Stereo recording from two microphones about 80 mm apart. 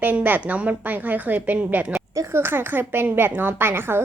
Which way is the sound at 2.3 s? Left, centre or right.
Right.